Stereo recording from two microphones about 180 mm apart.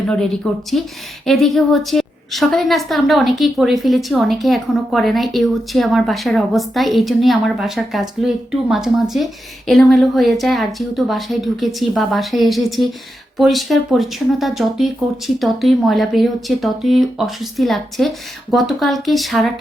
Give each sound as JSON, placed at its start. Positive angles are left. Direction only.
{"t": 0.1, "sound": "a woman's voice", "side_deg": 5}